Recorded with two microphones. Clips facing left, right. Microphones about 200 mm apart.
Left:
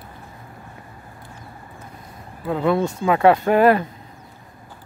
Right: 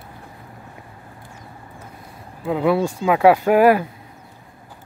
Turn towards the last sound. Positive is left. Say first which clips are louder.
# right 1 dB
turn(degrees=-10)  # may be behind; listen again after turning